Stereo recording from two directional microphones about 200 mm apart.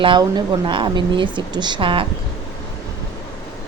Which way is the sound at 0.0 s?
25° right (ahead or behind).